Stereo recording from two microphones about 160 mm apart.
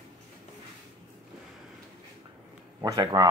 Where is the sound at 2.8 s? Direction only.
25° right (ahead or behind).